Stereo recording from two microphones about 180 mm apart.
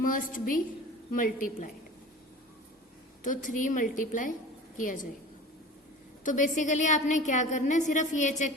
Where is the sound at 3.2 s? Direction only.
45° left (ahead or behind).